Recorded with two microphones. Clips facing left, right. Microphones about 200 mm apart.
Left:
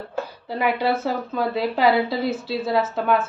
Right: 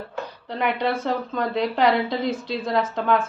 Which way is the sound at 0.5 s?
5° left (ahead or behind).